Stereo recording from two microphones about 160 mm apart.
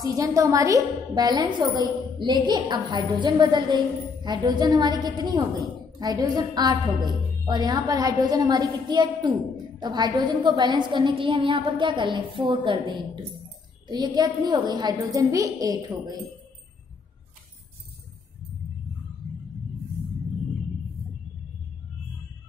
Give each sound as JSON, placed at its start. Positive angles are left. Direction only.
{"t": 0.0, "sound": "a woman's voice", "side_deg": -20}